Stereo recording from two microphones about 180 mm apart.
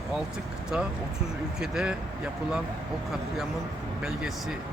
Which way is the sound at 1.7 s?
5° right (ahead or behind).